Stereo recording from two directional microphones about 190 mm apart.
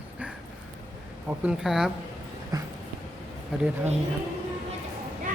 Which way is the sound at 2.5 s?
20° right (ahead or behind).